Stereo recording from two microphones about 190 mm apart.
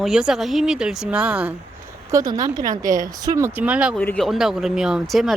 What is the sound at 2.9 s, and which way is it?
Speech, 45° right (ahead or behind).